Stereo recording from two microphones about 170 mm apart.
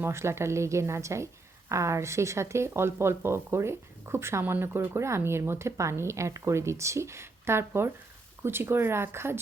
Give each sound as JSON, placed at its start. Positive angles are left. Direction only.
{"t": 0.0, "sound": "speech", "side_deg": -15}